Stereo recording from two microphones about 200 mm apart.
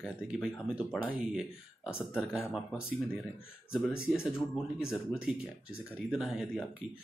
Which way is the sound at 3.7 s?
5° right (ahead or behind).